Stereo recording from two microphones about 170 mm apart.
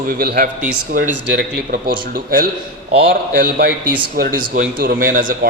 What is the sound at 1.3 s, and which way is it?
Speech, 85° right.